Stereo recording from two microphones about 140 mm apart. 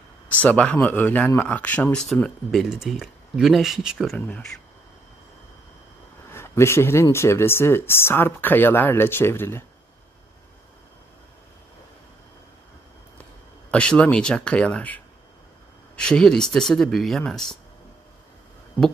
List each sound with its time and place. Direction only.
0.4 s speech: 10° left (ahead or behind)
6.3 s speech: 20° left (ahead or behind)
13.7 s speech: 5° left (ahead or behind)
16.0 s speech: 5° left (ahead or behind)